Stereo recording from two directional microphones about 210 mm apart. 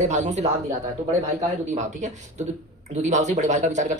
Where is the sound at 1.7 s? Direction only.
35° right (ahead or behind).